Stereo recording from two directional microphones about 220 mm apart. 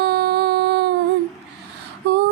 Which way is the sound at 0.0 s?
45° right (ahead or behind).